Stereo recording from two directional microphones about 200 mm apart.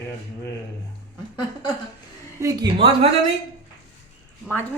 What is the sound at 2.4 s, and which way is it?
Speech, 20° right (ahead or behind).